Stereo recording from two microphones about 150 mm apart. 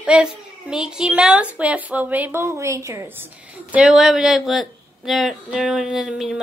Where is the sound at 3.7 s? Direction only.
5° right (ahead or behind).